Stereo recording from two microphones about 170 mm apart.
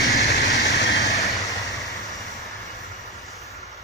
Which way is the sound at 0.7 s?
90° left.